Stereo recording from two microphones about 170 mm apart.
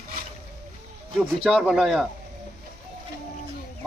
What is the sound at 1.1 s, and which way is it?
Speech, centre (ahead or behind).